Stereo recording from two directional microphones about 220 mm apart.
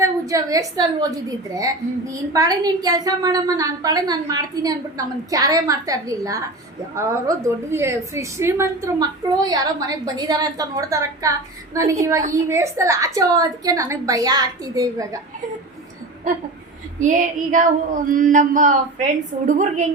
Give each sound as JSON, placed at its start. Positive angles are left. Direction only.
{"t": 0.0, "sound": "a woman's voice", "side_deg": -15}
{"t": 17.0, "sound": "female singing", "side_deg": -35}